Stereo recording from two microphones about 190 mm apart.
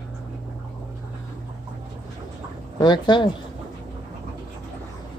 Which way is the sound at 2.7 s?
25° left (ahead or behind).